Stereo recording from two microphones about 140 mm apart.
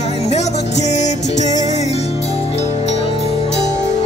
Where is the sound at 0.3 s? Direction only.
50° left (ahead or behind).